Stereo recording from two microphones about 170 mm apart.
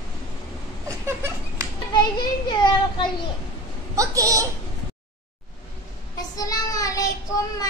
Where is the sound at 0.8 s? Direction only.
15° right (ahead or behind).